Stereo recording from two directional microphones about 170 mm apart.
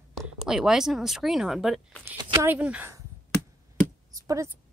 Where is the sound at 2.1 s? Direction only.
15° right (ahead or behind).